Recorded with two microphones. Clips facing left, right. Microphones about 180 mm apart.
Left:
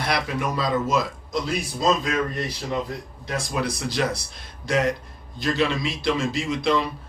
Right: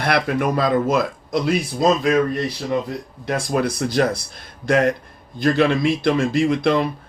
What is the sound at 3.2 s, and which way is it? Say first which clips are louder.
Speech: right 6 dB; 55° right (ahead or behind).